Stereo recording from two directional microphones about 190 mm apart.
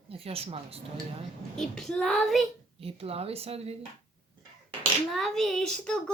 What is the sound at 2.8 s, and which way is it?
Speech, 30° right (ahead or behind).